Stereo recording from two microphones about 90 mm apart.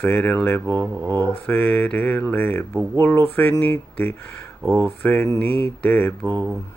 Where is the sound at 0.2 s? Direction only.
10° left (ahead or behind).